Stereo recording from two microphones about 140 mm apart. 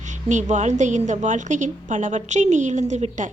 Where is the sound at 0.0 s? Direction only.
60° right (ahead or behind).